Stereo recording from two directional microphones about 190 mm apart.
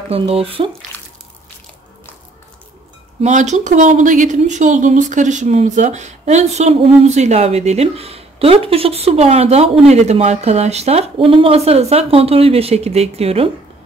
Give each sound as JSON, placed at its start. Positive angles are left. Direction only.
{"t": 0.1, "sound": "speech", "side_deg": -30}
{"t": 3.2, "sound": "speech", "side_deg": -40}